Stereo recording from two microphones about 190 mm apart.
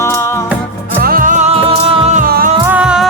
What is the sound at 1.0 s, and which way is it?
Music, 45° right (ahead or behind).